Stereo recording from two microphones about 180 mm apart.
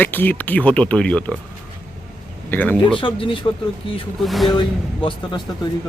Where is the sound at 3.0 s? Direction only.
30° left (ahead or behind).